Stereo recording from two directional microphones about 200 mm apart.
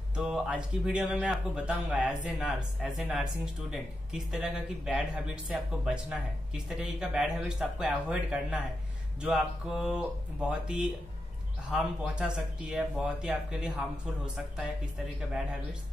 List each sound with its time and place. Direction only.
0.1 s speech: 5° right (ahead or behind)